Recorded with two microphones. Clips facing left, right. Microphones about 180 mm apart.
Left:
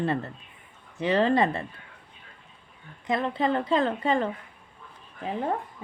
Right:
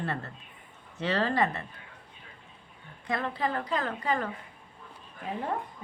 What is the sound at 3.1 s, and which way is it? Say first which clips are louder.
A woman's voice: left 5 dB; 20° left (ahead or behind).